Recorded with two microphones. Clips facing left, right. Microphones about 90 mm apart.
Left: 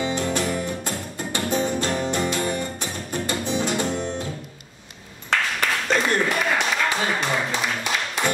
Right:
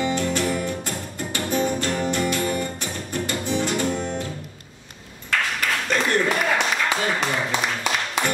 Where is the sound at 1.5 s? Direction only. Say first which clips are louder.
Right 1 dB; 20° left (ahead or behind).